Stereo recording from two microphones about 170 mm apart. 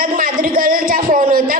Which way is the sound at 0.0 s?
55° right (ahead or behind).